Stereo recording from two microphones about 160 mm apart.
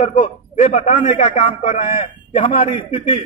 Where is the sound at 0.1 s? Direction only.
50° left (ahead or behind).